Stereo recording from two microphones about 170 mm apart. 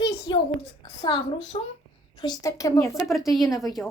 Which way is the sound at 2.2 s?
20° left (ahead or behind).